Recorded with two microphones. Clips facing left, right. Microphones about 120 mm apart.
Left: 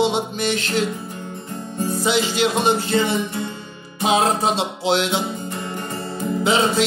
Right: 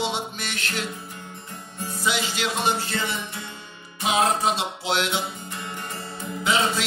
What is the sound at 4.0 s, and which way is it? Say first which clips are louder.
Music: left 4 dB; 25° left (ahead or behind).